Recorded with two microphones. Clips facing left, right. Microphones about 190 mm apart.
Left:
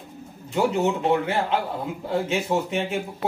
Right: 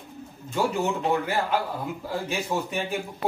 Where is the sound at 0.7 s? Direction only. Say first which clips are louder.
Left 4 dB; 20° left (ahead or behind).